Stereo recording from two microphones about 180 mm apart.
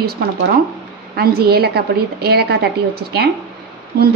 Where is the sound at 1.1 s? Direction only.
60° right (ahead or behind).